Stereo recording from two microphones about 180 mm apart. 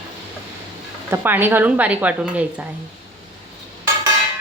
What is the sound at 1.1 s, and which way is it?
A woman's voice, 10° right (ahead or behind).